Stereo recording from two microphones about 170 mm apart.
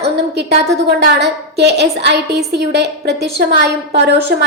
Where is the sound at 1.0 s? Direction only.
80° right.